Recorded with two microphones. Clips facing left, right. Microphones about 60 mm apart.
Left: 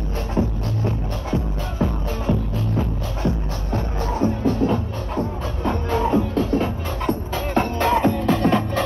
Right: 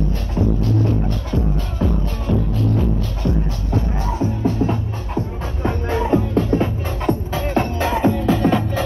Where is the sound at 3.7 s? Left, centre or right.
Left.